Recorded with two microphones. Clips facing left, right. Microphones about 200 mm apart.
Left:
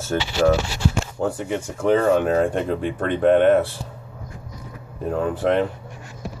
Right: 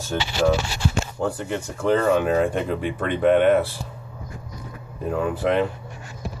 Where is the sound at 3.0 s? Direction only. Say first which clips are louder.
Left 1 dB; 45° left (ahead or behind).